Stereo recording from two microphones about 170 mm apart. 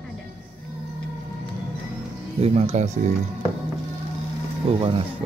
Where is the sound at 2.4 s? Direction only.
40° right (ahead or behind).